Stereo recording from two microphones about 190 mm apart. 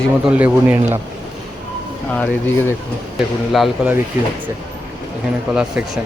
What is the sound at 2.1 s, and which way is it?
Speech, 5° left (ahead or behind).